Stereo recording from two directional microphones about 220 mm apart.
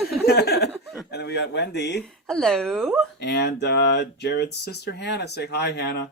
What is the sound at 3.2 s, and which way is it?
Speech, 50° left (ahead or behind).